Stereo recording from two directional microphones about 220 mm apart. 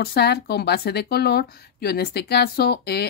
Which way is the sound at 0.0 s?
45° left (ahead or behind).